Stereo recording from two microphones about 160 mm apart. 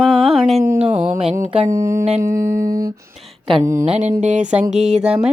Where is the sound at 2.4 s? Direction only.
15° right (ahead or behind).